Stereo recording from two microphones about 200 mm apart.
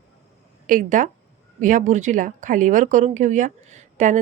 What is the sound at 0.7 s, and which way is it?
A woman's voice, 40° right (ahead or behind).